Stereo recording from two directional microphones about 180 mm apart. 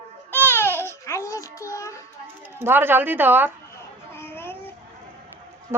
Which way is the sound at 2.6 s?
10° right (ahead or behind).